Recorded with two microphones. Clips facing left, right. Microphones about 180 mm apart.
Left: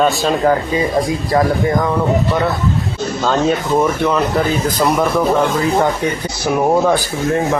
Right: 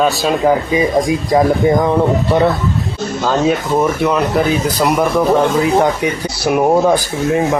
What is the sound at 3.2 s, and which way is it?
Speech, 5° right (ahead or behind).